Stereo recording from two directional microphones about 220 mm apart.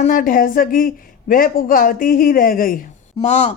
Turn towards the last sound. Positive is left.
turn(degrees=30)  # may be behind; listen again after turning